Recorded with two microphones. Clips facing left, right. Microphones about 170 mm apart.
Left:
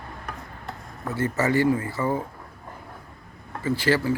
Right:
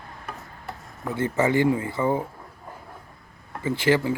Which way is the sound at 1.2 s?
15° right (ahead or behind).